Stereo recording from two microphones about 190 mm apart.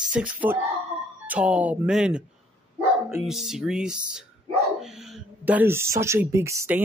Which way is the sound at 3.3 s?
Centre (ahead or behind).